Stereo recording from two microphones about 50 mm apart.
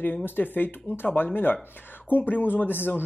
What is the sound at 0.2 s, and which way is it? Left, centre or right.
Speech, left.